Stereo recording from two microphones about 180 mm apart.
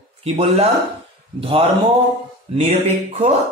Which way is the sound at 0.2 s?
35° right (ahead or behind).